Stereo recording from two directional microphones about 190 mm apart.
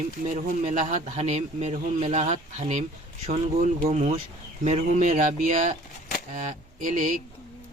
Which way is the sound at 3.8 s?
35° right (ahead or behind).